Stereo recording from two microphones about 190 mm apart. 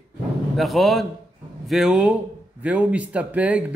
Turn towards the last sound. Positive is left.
turn(degrees=-5)  # may be behind; listen again after turning